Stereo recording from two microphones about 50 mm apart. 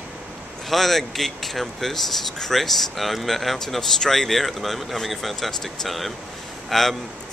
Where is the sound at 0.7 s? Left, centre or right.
Centre.